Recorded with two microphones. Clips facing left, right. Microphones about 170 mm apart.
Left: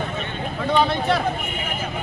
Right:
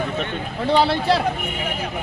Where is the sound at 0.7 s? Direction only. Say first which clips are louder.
Right 2 dB; 30° right (ahead or behind).